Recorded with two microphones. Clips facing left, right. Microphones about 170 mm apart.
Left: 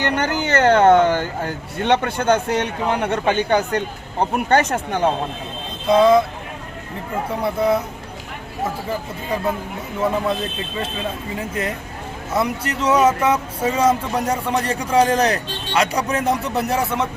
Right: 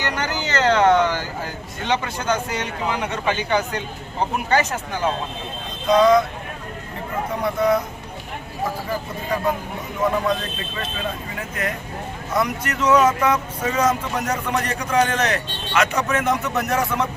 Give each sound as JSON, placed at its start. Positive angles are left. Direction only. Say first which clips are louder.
{"t": 0.0, "sound": "speech", "louder": "left 5 dB", "side_deg": 55}
{"t": 5.9, "sound": "speech", "louder": "left 2 dB", "side_deg": 30}
{"t": 7.4, "sound": "speech", "louder": "even", "side_deg": 30}
{"t": 11.3, "sound": "speech", "louder": "left 3 dB", "side_deg": 25}